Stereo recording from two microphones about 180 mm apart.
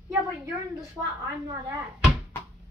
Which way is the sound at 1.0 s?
5° right (ahead or behind).